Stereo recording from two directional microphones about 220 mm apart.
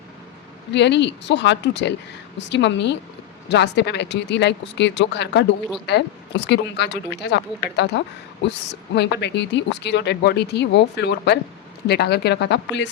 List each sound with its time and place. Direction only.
0.7 s speech: 50° left (ahead or behind)